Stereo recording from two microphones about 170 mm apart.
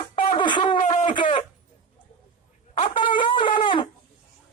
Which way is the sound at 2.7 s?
30° left (ahead or behind).